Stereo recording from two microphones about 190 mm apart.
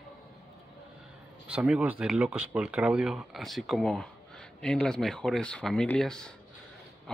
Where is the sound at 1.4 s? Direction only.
5° right (ahead or behind).